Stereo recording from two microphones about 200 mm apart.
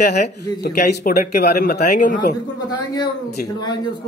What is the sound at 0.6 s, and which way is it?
A man's voice, 50° left (ahead or behind).